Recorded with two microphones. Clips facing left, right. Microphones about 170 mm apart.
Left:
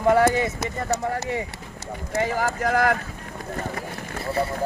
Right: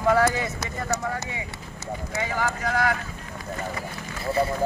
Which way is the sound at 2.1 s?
45° left (ahead or behind).